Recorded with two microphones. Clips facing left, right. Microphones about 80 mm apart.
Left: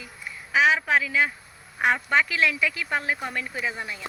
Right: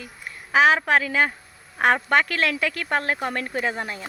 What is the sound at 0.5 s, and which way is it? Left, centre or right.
Speech, right.